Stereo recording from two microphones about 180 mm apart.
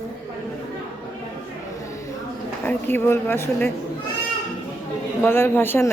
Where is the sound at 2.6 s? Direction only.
10° left (ahead or behind).